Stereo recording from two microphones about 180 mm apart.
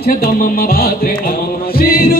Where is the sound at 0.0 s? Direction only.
55° left (ahead or behind).